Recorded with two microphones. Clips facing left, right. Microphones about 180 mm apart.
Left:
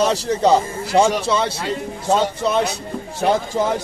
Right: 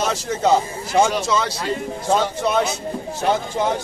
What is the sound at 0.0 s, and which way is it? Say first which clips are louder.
Speech: left 4 dB; 35° left (ahead or behind).